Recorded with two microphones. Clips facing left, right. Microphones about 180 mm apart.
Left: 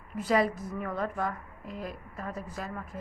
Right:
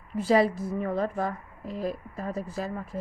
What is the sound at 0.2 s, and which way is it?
A woman's voice, 30° right (ahead or behind).